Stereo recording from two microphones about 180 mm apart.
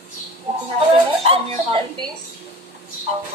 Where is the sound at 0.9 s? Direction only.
30° right (ahead or behind).